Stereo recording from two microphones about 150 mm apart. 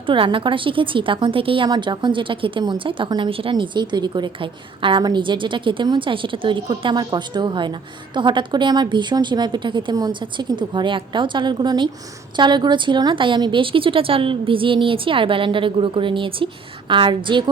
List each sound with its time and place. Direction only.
0.0 s a woman's voice: 35° right (ahead or behind)